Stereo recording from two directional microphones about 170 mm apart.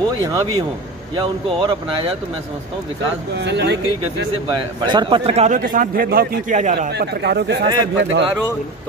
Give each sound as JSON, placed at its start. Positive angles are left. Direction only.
{"t": 0.2, "sound": "a man's voice", "side_deg": -20}
{"t": 3.3, "sound": "speech", "side_deg": -90}
{"t": 4.8, "sound": "a man's voice", "side_deg": -25}
{"t": 5.7, "sound": "a man's voice", "side_deg": -55}
{"t": 6.9, "sound": "speech", "side_deg": -75}